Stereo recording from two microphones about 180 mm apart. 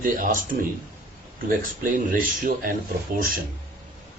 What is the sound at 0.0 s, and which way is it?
Speech, 50° right (ahead or behind).